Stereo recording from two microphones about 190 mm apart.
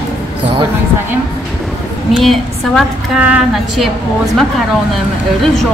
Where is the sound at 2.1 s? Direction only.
Centre (ahead or behind).